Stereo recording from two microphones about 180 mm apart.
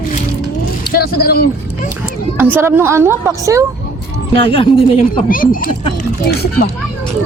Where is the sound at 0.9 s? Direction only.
55° left (ahead or behind).